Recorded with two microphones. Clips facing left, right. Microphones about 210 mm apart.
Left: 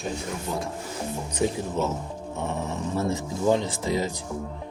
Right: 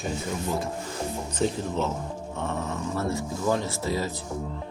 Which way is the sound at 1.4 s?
10° left (ahead or behind).